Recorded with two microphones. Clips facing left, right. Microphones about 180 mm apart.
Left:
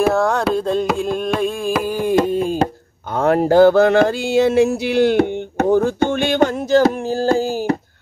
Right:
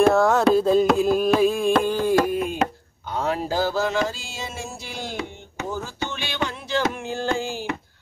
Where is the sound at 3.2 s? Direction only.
60° left (ahead or behind).